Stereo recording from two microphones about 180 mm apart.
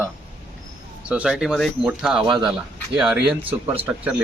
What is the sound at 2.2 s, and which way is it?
Speech, 25° right (ahead or behind).